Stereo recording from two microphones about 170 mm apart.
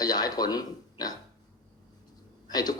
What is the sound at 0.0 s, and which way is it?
A man's voice, 20° left (ahead or behind).